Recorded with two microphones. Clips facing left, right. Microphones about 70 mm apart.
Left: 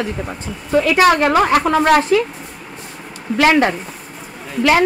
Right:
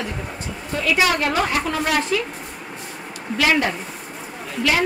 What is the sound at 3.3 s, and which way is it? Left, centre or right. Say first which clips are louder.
Speech: left 6 dB; left.